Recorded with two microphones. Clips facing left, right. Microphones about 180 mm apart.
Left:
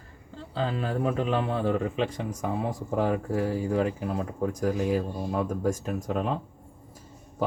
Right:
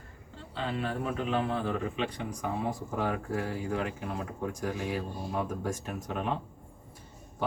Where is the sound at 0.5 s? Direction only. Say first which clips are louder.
Left 4 dB; 35° left (ahead or behind).